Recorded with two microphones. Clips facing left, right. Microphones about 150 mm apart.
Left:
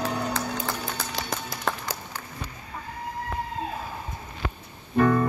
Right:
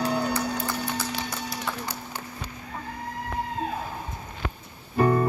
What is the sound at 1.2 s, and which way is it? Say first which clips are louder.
Music: even; 90° left.